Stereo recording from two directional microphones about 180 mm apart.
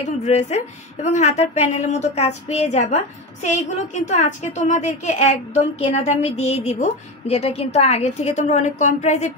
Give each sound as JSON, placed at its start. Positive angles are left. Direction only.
{"t": 0.0, "sound": "a woman's voice", "side_deg": 40}